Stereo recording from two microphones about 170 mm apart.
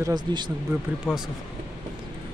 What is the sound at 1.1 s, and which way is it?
Speech, centre (ahead or behind).